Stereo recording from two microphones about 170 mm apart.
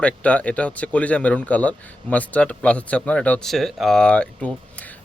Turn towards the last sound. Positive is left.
turn(degrees=5)  # may be behind; listen again after turning